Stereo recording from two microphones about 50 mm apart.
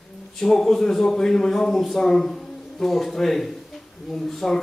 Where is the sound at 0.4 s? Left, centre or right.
Centre.